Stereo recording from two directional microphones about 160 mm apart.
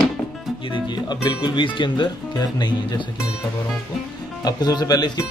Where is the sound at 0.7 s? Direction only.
25° left (ahead or behind).